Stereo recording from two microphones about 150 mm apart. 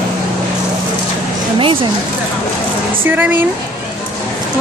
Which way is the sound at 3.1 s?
15° right (ahead or behind).